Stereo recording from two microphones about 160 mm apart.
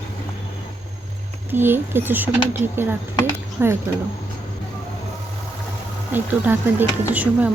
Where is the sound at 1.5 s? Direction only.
15° right (ahead or behind).